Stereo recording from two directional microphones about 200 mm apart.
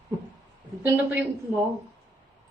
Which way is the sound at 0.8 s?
10° right (ahead or behind).